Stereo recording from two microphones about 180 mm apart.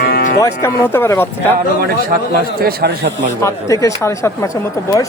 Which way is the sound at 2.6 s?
60° right (ahead or behind).